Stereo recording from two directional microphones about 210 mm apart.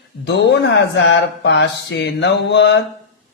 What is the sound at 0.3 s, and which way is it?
Mantra, 55° left (ahead or behind).